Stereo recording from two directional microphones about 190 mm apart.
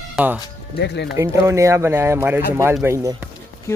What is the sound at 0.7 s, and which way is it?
Speech, 60° left (ahead or behind).